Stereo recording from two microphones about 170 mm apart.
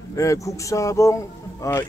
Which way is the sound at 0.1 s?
20° left (ahead or behind).